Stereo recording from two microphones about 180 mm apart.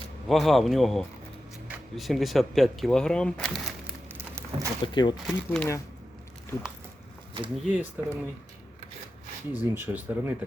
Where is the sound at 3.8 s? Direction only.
15° right (ahead or behind).